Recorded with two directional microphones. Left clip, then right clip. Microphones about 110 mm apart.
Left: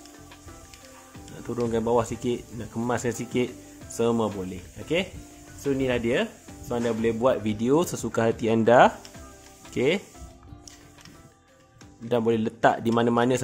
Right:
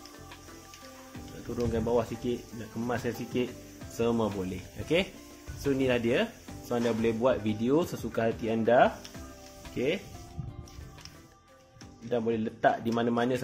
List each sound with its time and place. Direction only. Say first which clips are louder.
1.6 s speech: left 5 dB; 55° left (ahead or behind)
3.9 s speech: left 5 dB; 45° left (ahead or behind)
4.3 s speech: left 1 dB; 5° left (ahead or behind)
5.8 s speech: left 2 dB; 20° left (ahead or behind)
7.2 s speech: left 4 dB; 40° left (ahead or behind); by 8.9 s 70° left (ahead or behind)
9.8 s speech: left 6 dB; 90° left
12.1 s a man's voice: left 6 dB; 80° left; by 13.4 s 65° left (ahead or behind)